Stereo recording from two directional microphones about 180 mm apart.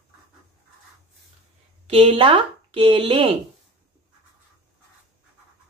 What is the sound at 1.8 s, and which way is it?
Speech, 30° right (ahead or behind).